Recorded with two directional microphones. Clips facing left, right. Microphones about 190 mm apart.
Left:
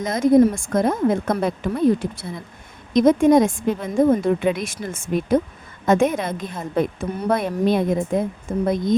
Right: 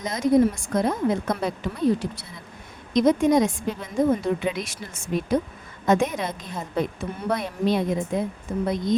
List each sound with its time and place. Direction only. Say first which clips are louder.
0.0 s a woman's voice: left 5 dB; 50° left (ahead or behind)